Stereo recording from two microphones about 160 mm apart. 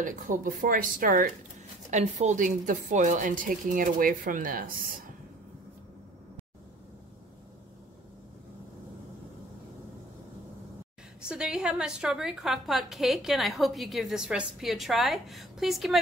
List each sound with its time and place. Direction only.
0.0 s a woman's voice: 55° right (ahead or behind)
1.9 s a woman's voice: 45° right (ahead or behind); by 5.0 s 60° right (ahead or behind)
11.2 s a woman's voice: 5° right (ahead or behind)